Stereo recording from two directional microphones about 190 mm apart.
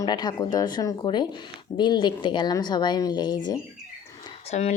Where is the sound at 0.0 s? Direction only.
20° left (ahead or behind).